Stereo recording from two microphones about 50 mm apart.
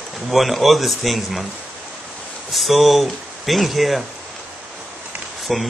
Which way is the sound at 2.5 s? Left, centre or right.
Centre.